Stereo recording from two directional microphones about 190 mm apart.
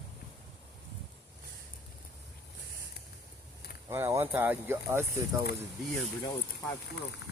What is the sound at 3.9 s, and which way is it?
Speech, 15° right (ahead or behind).